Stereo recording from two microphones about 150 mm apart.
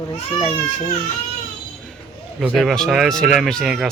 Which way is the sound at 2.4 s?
5° right (ahead or behind).